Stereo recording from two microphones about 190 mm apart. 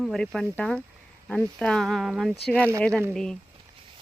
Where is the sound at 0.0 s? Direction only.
Centre (ahead or behind).